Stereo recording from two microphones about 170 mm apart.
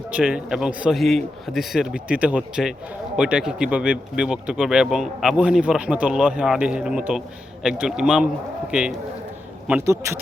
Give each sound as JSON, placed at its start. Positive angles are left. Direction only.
{"t": 0.1, "sound": "speech", "side_deg": -10}